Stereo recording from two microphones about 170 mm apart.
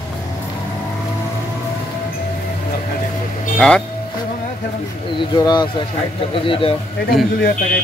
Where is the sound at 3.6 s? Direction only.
5° left (ahead or behind).